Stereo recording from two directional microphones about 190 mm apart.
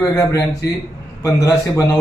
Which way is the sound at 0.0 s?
15° left (ahead or behind).